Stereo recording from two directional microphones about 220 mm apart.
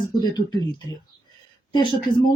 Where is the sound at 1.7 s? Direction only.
20° left (ahead or behind).